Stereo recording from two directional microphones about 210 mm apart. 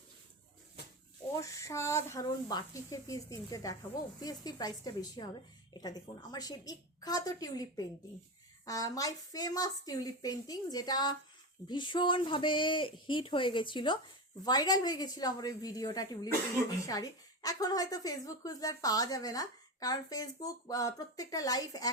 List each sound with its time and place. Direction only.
1.4 s a woman's voice: 15° left (ahead or behind)